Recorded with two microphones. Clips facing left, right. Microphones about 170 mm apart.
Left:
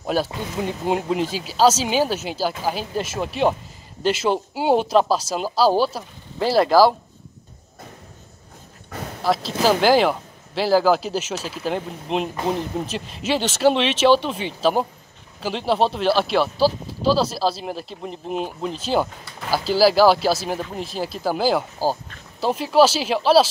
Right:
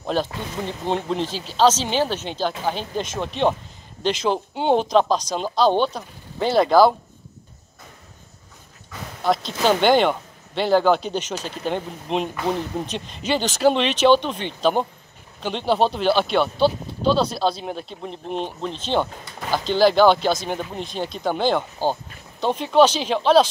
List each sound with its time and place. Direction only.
0.0 s speech: 10° left (ahead or behind)
9.2 s speech: centre (ahead or behind)